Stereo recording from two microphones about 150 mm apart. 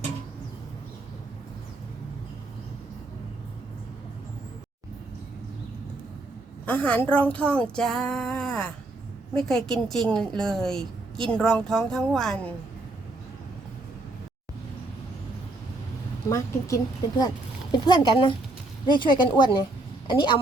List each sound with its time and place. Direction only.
6.7 s a woman's voice: 10° left (ahead or behind)
16.3 s a woman's voice: 20° left (ahead or behind)